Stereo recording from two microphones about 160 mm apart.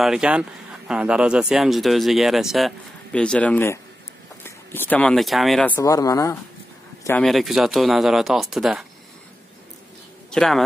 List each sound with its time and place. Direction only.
0.0 s speech: 5° right (ahead or behind)
5.8 s speech: 20° left (ahead or behind)
7.2 s speech: centre (ahead or behind)
10.3 s speech: 5° left (ahead or behind)